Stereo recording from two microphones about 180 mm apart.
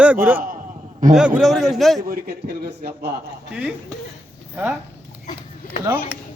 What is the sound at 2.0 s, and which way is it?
A man's voice, 55° right (ahead or behind).